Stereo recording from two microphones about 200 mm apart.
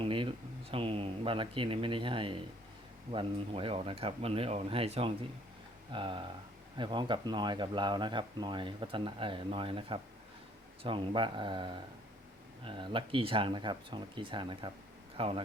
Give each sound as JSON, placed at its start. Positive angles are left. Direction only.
{"t": 0.0, "sound": "speech", "side_deg": -25}